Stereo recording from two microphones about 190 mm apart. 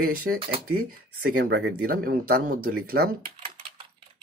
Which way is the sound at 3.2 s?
30° right (ahead or behind).